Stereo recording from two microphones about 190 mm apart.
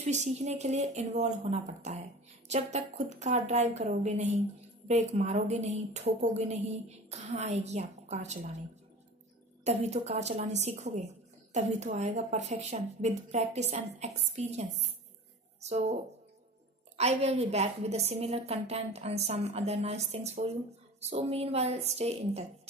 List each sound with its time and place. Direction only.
0.0 s a woman's voice: 35° right (ahead or behind)
9.7 s a woman's voice: 35° right (ahead or behind)